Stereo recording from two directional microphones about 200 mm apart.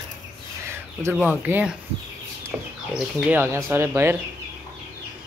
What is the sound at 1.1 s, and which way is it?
Speech, 5° right (ahead or behind).